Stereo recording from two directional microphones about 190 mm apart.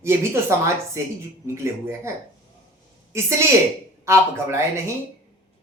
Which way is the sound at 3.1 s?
15° right (ahead or behind).